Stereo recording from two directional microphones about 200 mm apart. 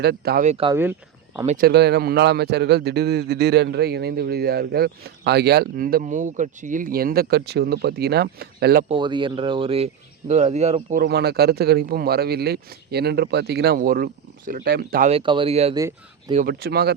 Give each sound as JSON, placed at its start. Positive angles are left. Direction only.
{"t": 0.0, "sound": "a man's voice", "side_deg": -55}
{"t": 0.4, "sound": "speech", "side_deg": -30}
{"t": 0.7, "sound": "speech", "side_deg": -10}
{"t": 1.5, "sound": "a man's voice", "side_deg": -45}
{"t": 8.9, "sound": "speech", "side_deg": -25}
{"t": 11.0, "sound": "a man's voice", "side_deg": -55}
{"t": 15.1, "sound": "speech", "side_deg": -25}
{"t": 15.7, "sound": "speech", "side_deg": -20}
{"t": 16.5, "sound": "a man's voice", "side_deg": -50}